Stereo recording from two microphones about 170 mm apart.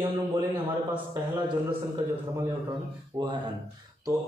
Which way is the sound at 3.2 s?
25° right (ahead or behind).